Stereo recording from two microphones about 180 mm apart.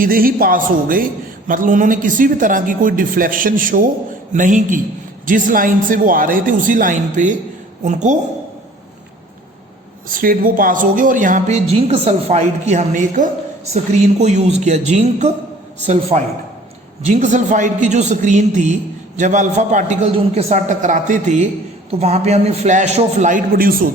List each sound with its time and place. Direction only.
0.0 s a man's voice: 55° right (ahead or behind)
10.1 s a man's voice: 50° right (ahead or behind)